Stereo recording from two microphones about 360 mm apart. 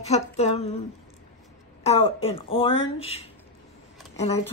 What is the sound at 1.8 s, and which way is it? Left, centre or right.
Speech, centre.